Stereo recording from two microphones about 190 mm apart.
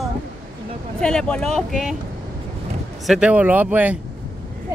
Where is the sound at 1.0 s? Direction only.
5° left (ahead or behind).